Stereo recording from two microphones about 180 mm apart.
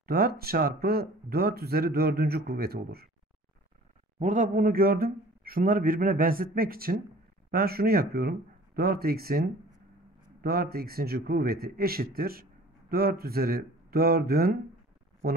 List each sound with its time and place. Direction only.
0.0 s speech: 60° right (ahead or behind)
4.2 s a man's voice: 45° right (ahead or behind)
10.4 s speech: 60° right (ahead or behind)